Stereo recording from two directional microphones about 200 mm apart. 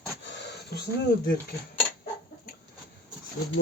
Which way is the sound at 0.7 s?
55° left (ahead or behind).